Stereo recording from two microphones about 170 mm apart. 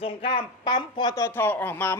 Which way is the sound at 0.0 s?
30° left (ahead or behind).